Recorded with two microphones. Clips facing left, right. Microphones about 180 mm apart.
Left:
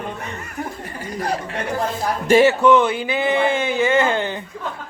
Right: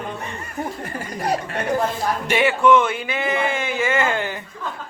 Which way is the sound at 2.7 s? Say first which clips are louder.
Left 1 dB; 30° left (ahead or behind).